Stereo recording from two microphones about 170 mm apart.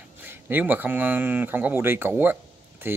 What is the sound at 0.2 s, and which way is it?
Speech, 10° right (ahead or behind).